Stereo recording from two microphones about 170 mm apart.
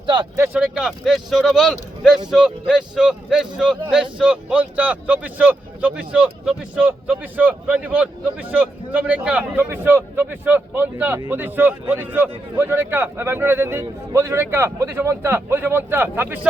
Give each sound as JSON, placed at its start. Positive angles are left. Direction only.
{"t": 0.0, "sound": "speech", "side_deg": -25}
{"t": 0.3, "sound": "speech", "side_deg": -10}